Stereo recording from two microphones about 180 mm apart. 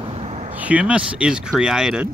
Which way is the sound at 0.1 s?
35° right (ahead or behind).